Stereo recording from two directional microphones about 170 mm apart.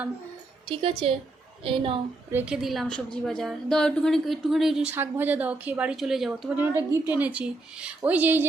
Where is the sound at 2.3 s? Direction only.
5° right (ahead or behind).